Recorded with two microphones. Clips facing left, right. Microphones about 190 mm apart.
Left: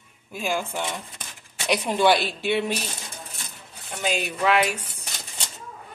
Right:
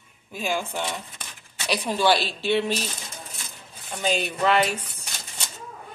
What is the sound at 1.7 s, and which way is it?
Speech, 20° left (ahead or behind).